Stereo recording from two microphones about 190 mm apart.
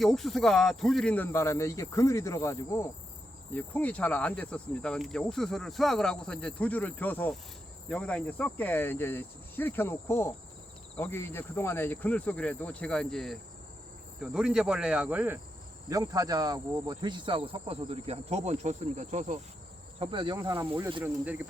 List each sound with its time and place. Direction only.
0.0 s speech: centre (ahead or behind)
3.5 s cricket: 10° left (ahead or behind)
7.9 s speech: 5° left (ahead or behind)
14.2 s cricket: 5° right (ahead or behind)
15.9 s speech: 20° right (ahead or behind); by 19.4 s 40° right (ahead or behind)
20.0 s speech: 25° right (ahead or behind)